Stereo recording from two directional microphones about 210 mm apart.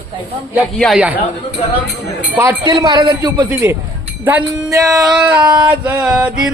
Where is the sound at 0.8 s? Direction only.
Centre (ahead or behind).